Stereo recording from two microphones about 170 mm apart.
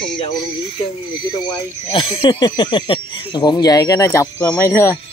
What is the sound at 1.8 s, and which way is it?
Speech, 30° left (ahead or behind).